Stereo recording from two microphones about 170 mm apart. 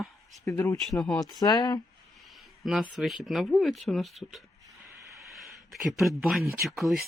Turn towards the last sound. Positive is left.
turn(degrees=0)  # may be behind; listen again after turning